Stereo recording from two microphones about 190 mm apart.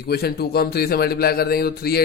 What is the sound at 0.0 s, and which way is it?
A man's voice, 55° left (ahead or behind).